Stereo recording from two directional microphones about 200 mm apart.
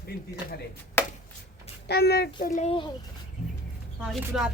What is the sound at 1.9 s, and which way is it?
Speech, 55° left (ahead or behind).